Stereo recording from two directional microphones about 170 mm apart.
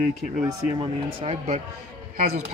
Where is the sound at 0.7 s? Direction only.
35° right (ahead or behind).